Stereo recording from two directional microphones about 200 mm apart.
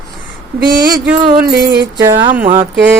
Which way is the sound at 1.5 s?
50° right (ahead or behind).